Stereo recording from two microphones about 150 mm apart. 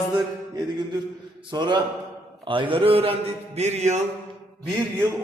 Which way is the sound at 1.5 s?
30° right (ahead or behind).